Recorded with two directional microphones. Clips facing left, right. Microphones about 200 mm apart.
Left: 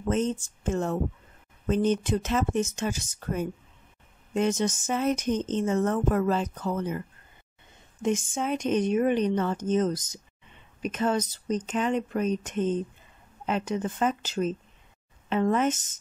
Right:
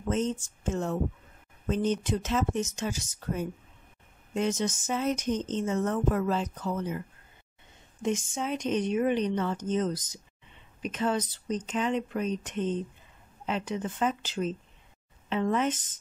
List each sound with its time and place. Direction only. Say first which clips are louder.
0.1 s speech: left 2 dB; 55° left (ahead or behind)
8.0 s speech: left 3 dB; 50° left (ahead or behind)